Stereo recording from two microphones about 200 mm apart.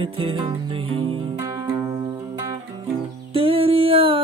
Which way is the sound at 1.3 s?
15° right (ahead or behind).